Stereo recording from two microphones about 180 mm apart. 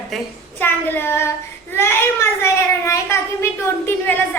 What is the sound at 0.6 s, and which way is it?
A child's voice, 10° left (ahead or behind).